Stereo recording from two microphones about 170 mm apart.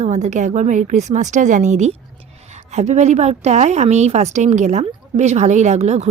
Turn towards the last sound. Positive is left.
turn(degrees=-40)  # may be behind; listen again after turning